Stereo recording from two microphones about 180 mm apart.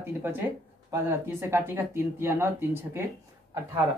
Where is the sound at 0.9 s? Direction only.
15° right (ahead or behind).